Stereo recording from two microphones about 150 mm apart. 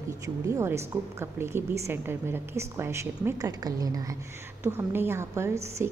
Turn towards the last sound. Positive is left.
turn(degrees=-20)  # may be behind; listen again after turning